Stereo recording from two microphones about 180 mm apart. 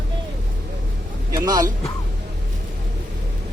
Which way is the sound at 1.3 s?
20° right (ahead or behind).